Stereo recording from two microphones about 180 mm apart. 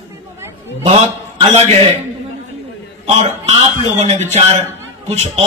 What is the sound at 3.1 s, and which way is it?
Music, 35° right (ahead or behind).